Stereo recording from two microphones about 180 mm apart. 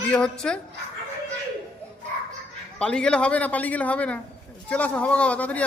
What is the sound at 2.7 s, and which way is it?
A man's voice, 5° left (ahead or behind).